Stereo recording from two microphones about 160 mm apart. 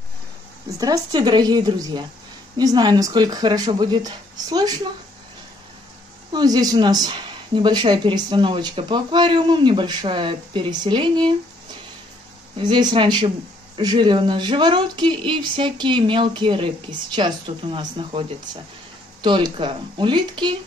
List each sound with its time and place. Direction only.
0.7 s a woman's voice: 20° right (ahead or behind)
6.3 s a woman's voice: 25° right (ahead or behind)
12.5 s a woman's voice: 30° right (ahead or behind)